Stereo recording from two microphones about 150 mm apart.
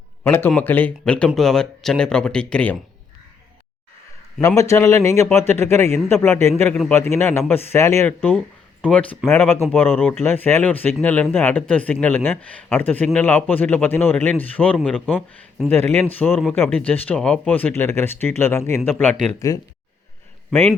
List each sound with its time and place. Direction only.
0.3 s speech: 15° left (ahead or behind)
4.4 s a man's voice: 20° left (ahead or behind)
14.8 s speech: centre (ahead or behind)
15.7 s speech: 15° left (ahead or behind)
16.3 s a man's voice: centre (ahead or behind); by 19.6 s 25° left (ahead or behind)